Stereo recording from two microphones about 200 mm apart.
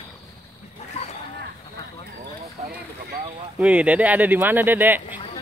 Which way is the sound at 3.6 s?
5° right (ahead or behind).